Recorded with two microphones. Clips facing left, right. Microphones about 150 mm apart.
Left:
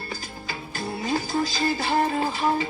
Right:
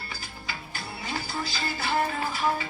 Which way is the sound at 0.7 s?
40° left (ahead or behind).